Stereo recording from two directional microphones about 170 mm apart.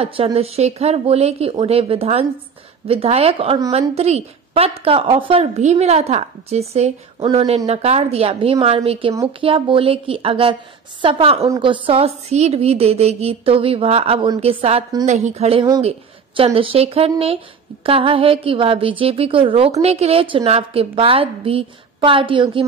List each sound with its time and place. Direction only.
0.0 s a woman's voice: 35° right (ahead or behind)